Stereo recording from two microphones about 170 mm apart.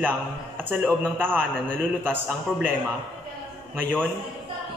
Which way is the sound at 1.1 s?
10° right (ahead or behind).